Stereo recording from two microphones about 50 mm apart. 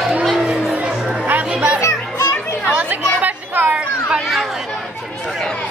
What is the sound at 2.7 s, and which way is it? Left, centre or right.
Chatter, right.